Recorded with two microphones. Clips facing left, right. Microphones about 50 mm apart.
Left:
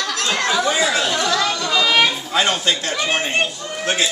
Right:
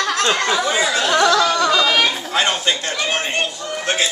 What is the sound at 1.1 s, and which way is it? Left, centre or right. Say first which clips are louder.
Speech: right 5 dB; right.